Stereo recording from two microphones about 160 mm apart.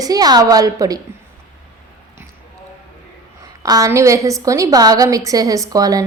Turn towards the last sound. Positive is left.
turn(degrees=-20)  # may be behind; listen again after turning